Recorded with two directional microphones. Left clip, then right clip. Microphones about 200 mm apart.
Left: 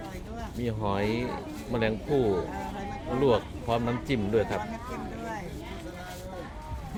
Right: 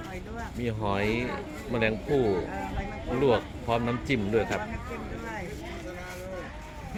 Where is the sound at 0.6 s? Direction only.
5° left (ahead or behind).